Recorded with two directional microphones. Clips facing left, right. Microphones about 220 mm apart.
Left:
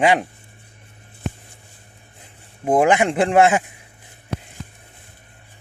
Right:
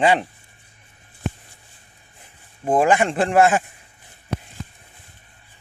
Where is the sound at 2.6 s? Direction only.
15° left (ahead or behind).